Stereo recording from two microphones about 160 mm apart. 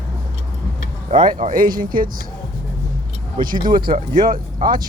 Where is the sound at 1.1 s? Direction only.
30° right (ahead or behind).